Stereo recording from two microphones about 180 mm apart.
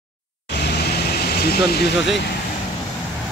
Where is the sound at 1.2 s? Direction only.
60° left (ahead or behind).